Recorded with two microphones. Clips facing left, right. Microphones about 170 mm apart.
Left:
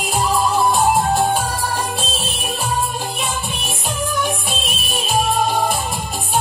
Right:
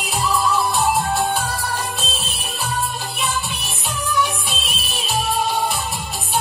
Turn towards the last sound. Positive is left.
turn(degrees=45)  # may be behind; listen again after turning